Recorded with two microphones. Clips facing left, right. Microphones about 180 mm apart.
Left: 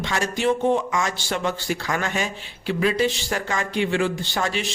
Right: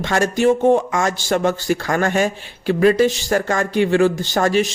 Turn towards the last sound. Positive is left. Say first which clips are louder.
# right 9 dB
turn(degrees=-45)  # may be behind; listen again after turning